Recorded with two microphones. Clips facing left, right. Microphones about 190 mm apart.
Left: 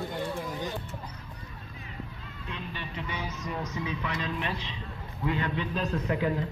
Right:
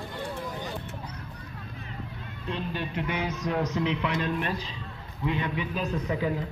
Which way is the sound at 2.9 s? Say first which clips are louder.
Right 5 dB; 60° right (ahead or behind).